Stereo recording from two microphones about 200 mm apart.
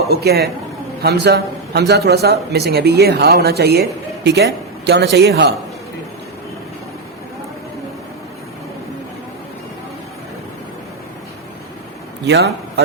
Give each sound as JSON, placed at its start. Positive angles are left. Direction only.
{"t": 0.1, "sound": "a man's voice", "side_deg": -50}
{"t": 12.3, "sound": "a man's voice", "side_deg": -55}